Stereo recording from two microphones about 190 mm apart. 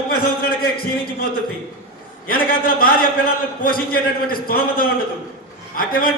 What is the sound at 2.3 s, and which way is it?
A man's voice, 50° left (ahead or behind).